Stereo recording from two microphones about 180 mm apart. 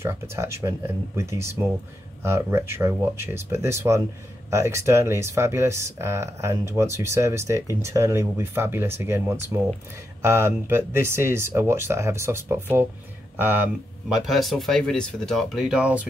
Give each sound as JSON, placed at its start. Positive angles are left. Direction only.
{"t": 0.0, "sound": "speech", "side_deg": -15}